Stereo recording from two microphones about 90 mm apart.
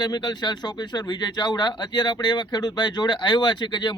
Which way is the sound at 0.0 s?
50° left (ahead or behind).